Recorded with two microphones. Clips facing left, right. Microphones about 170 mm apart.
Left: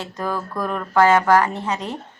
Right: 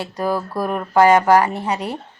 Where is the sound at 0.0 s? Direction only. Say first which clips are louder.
Right 4 dB; 10° right (ahead or behind).